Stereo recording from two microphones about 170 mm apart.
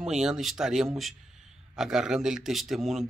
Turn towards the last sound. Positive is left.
turn(degrees=0)  # may be behind; listen again after turning